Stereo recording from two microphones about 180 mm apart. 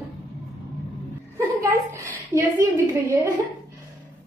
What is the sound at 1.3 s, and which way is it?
A woman's voice, 15° right (ahead or behind).